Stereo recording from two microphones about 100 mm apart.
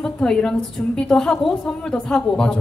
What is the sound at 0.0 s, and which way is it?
A woman's voice, 5° left (ahead or behind).